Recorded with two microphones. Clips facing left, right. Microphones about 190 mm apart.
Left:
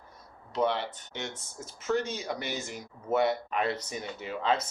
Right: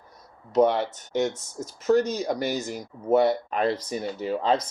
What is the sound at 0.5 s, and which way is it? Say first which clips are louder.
Speech: right 8 dB; 45° right (ahead or behind).